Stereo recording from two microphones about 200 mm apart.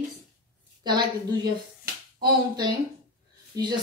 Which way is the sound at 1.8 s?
20° right (ahead or behind).